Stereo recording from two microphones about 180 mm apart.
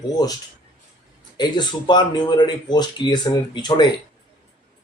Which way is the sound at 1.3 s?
25° left (ahead or behind).